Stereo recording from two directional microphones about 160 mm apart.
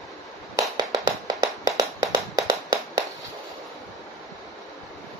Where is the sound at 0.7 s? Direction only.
20° right (ahead or behind).